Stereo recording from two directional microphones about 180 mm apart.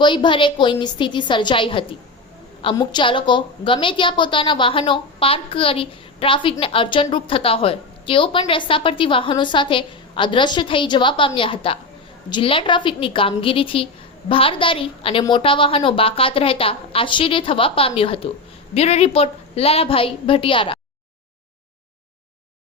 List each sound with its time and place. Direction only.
0.0 s a woman's voice: 25° left (ahead or behind)